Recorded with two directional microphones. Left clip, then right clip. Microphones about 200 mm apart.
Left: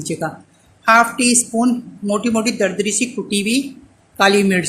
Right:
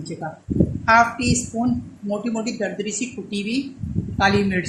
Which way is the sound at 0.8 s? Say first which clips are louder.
Left 4 dB; 55° left (ahead or behind).